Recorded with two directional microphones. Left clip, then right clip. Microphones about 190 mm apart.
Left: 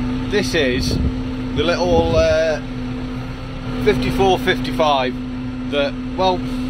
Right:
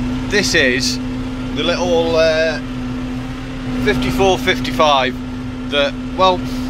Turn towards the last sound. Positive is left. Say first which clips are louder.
# right 4 dB
turn(degrees=15)  # may be behind; listen again after turning